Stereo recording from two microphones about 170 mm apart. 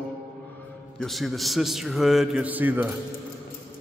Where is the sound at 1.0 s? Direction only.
Centre (ahead or behind).